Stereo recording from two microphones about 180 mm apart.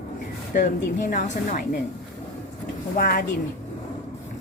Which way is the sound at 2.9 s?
55° left (ahead or behind).